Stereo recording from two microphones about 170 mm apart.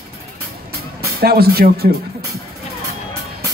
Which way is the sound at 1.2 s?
65° right (ahead or behind).